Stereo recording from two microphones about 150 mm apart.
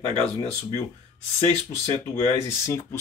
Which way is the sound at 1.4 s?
15° left (ahead or behind).